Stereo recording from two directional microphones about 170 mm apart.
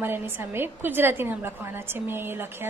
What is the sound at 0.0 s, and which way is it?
A woman's voice, 10° right (ahead or behind).